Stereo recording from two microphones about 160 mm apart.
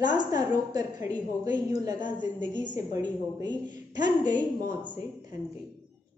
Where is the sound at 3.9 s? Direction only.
25° right (ahead or behind).